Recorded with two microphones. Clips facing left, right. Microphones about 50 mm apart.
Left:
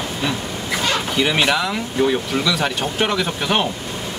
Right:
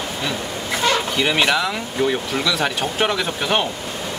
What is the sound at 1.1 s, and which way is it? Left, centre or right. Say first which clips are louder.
Speech: even; centre.